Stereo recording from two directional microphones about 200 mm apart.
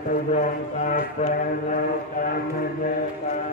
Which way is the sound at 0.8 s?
40° left (ahead or behind).